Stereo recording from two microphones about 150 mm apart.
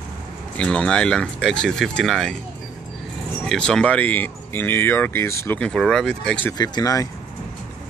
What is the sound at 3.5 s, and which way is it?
Speech, 5° left (ahead or behind).